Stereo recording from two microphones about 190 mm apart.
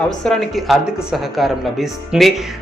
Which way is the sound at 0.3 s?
Centre (ahead or behind).